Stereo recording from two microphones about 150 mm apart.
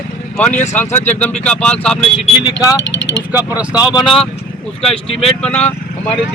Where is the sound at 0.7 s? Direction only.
15° left (ahead or behind).